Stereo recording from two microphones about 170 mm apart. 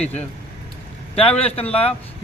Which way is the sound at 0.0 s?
40° left (ahead or behind).